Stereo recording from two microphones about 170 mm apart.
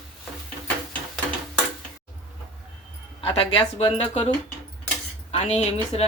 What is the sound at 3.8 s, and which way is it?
Dishes, 35° left (ahead or behind).